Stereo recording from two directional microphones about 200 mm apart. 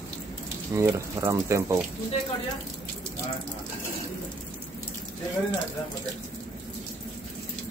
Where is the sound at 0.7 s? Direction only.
15° right (ahead or behind).